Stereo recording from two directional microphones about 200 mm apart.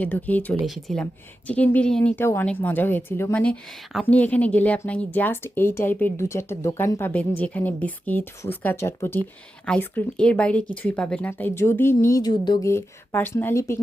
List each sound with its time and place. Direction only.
0.0 s a woman's voice: 10° left (ahead or behind)